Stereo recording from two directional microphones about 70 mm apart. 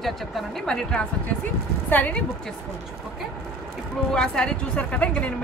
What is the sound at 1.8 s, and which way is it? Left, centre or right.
Speech, left.